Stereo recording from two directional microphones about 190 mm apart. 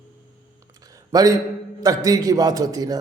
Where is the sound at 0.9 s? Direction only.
20° right (ahead or behind).